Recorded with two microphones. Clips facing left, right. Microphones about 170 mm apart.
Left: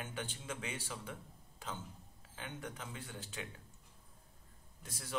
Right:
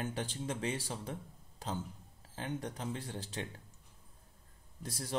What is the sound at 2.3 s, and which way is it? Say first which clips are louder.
Speech: right 6 dB; 35° right (ahead or behind).